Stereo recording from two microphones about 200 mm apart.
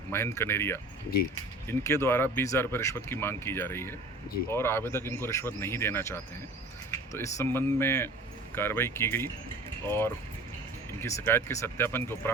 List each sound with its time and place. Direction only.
0.1 s speech: 10° left (ahead or behind)